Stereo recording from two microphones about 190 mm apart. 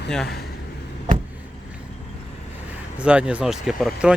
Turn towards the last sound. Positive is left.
turn(degrees=0)  # may be behind; listen again after turning